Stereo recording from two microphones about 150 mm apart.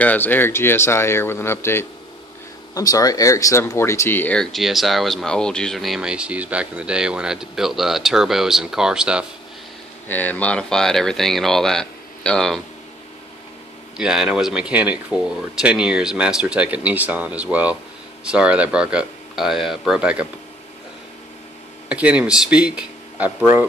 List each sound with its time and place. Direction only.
0.0 s speech: 10° left (ahead or behind); by 9.2 s 5° right (ahead or behind)
10.0 s speech: 10° left (ahead or behind)
13.9 s speech: 5° right (ahead or behind)
21.8 s speech: 10° right (ahead or behind)